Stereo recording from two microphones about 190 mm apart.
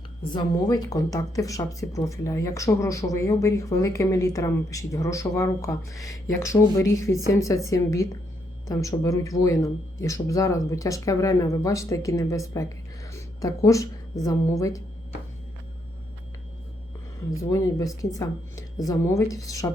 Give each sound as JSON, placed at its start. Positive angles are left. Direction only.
{"t": 0.3, "sound": "speech", "side_deg": 20}
{"t": 17.3, "sound": "speech", "side_deg": 15}